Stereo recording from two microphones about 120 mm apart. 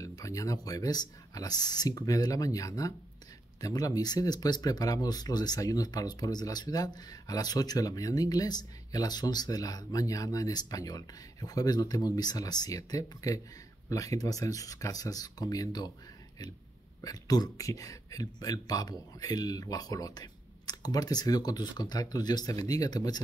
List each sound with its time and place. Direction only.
0.0 s speech: 25° left (ahead or behind)
17.0 s speech: 30° left (ahead or behind)